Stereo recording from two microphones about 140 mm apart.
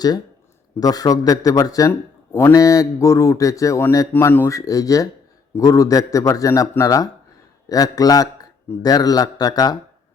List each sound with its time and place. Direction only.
0.8 s a man's voice: 25° left (ahead or behind)